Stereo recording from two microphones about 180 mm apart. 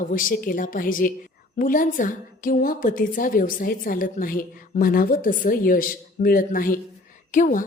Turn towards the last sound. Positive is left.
turn(degrees=45)  # may be behind; listen again after turning